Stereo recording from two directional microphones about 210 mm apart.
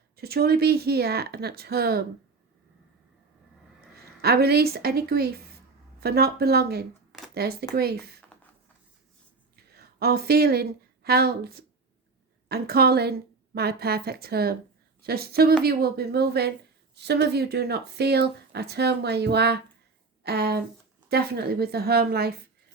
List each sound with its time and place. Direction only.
0.2 s speech: 50° right (ahead or behind)
4.2 s speech: 50° right (ahead or behind)
9.7 s speech: 50° right (ahead or behind)